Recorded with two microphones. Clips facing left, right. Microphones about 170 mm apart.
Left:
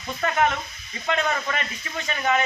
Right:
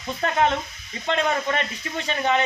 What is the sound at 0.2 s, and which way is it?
Speech, 30° right (ahead or behind).